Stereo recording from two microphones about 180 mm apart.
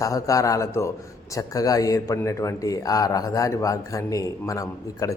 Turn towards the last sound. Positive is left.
turn(degrees=20)  # may be behind; listen again after turning